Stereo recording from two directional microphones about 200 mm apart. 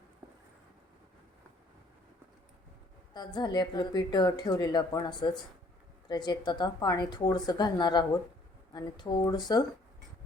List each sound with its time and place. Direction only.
3.2 s speech: 20° left (ahead or behind)